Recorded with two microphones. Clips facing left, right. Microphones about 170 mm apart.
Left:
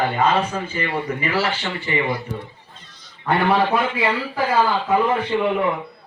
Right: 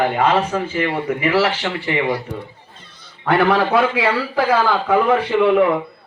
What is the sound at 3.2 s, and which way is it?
Speech, 90° right.